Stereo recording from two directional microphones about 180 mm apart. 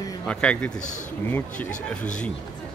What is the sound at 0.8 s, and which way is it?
Speech, 45° left (ahead or behind).